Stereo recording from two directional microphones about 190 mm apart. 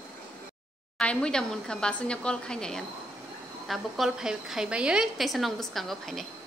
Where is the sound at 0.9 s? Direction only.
5° left (ahead or behind).